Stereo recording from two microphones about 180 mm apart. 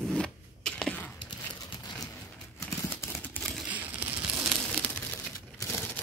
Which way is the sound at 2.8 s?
15° left (ahead or behind).